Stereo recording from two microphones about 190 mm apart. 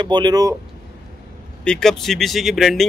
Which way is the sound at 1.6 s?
5° left (ahead or behind).